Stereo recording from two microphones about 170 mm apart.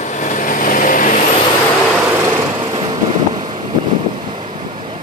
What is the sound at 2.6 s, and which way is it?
Vehicle, 25° right (ahead or behind).